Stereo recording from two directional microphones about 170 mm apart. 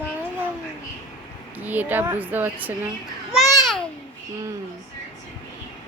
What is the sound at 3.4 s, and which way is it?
Babbling, 20° left (ahead or behind).